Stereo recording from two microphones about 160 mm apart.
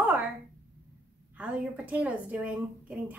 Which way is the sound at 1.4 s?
10° right (ahead or behind).